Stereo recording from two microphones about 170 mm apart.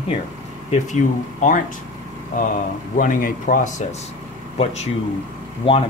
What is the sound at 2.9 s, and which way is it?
Speech, 50° left (ahead or behind).